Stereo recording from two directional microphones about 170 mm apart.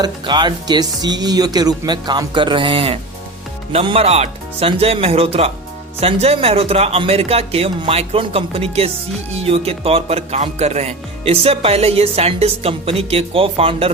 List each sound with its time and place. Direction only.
0.0 s speech: 25° right (ahead or behind)